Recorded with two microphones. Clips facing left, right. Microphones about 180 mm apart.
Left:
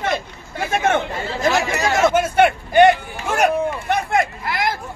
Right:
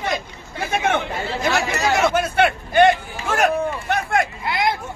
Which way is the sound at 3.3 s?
Centre (ahead or behind).